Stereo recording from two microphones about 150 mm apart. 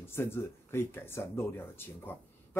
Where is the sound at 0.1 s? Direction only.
15° left (ahead or behind).